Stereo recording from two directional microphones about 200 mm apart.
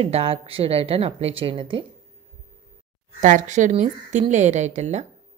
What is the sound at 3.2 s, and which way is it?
Speech, 40° right (ahead or behind).